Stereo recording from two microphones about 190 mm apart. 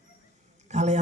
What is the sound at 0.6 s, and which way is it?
Speech, 35° right (ahead or behind).